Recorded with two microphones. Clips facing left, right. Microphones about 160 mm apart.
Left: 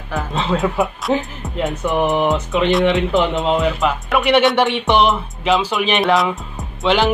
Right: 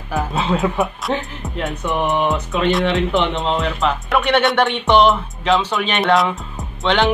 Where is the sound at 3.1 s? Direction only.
Centre (ahead or behind).